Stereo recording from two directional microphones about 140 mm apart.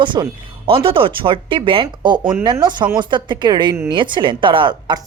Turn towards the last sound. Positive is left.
turn(degrees=-35)  # may be behind; listen again after turning